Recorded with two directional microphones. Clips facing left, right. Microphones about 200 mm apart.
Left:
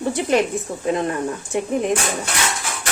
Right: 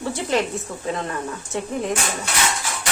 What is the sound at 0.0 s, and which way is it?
Speech, 15° left (ahead or behind).